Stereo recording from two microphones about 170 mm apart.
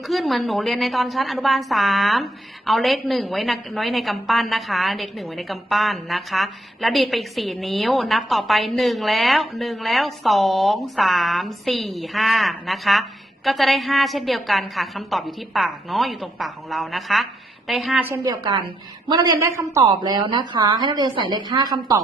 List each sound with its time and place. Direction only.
0.1 s a woman's voice: centre (ahead or behind); by 22.0 s 20° right (ahead or behind)